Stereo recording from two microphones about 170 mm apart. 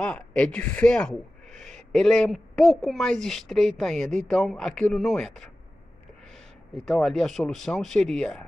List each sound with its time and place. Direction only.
0.0 s speech: 5° left (ahead or behind)
1.5 s a sound: 45° right (ahead or behind)
1.9 s a woman's voice: 5° left (ahead or behind)
6.7 s a woman's voice: centre (ahead or behind)